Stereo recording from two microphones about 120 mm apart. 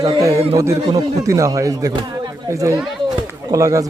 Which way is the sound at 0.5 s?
25° right (ahead or behind).